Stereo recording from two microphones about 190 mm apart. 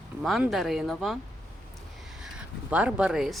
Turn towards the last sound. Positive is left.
turn(degrees=-5)  # may be behind; listen again after turning